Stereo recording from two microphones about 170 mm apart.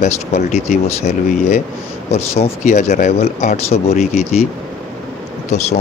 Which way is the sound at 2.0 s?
40° left (ahead or behind).